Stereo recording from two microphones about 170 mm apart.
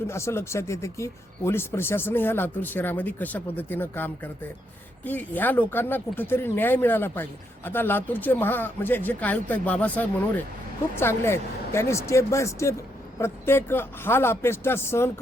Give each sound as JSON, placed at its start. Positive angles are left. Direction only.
{"t": 0.1, "sound": "speech", "side_deg": 15}